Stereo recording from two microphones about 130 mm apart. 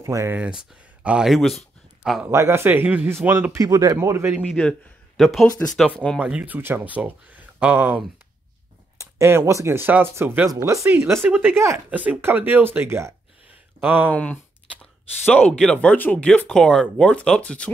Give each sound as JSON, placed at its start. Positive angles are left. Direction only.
{"t": 0.0, "sound": "speech", "side_deg": -20}
{"t": 0.4, "sound": "speech", "side_deg": -10}
{"t": 2.2, "sound": "speech", "side_deg": -20}
{"t": 4.5, "sound": "speech", "side_deg": 5}
{"t": 6.1, "sound": "speech", "side_deg": -10}
{"t": 14.1, "sound": "a sound", "side_deg": 10}
{"t": 15.4, "sound": "speech", "side_deg": 5}